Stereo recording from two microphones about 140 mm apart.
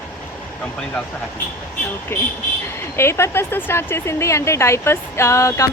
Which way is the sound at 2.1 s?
15° left (ahead or behind).